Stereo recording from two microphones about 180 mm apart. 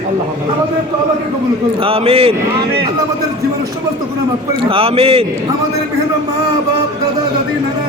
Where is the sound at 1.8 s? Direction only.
30° right (ahead or behind).